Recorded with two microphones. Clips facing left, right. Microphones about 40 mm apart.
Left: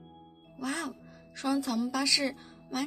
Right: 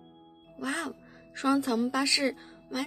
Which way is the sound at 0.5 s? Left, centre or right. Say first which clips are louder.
Right 1 dB; right.